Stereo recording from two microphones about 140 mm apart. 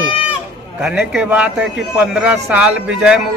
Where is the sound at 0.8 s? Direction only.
5° right (ahead or behind).